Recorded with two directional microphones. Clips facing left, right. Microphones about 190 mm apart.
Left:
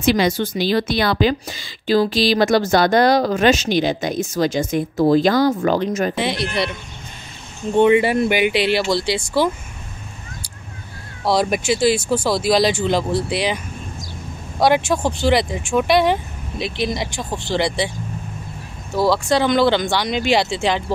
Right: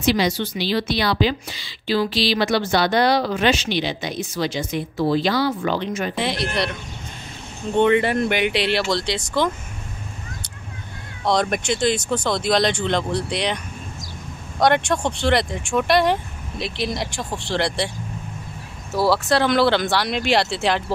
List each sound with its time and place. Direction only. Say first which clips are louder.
0.0 s a woman's voice: left 3 dB; 50° left (ahead or behind)
6.1 s speech: left 2 dB; centre (ahead or behind)
7.7 s speech: left 3 dB; 10° left (ahead or behind)
11.2 s speech: left 3 dB; 5° left (ahead or behind)
14.6 s speech: left 2 dB; 5° left (ahead or behind)